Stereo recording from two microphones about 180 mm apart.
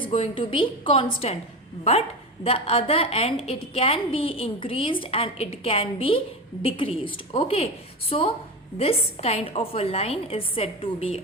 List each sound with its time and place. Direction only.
0.1 s a woman's voice: 30° left (ahead or behind)